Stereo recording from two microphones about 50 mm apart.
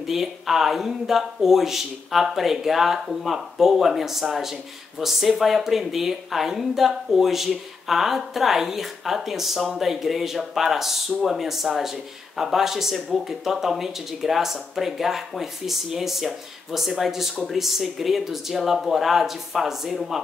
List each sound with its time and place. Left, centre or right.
0.0 s speech: centre